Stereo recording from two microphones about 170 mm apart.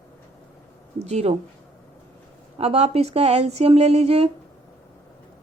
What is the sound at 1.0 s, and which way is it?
Speech, 40° right (ahead or behind).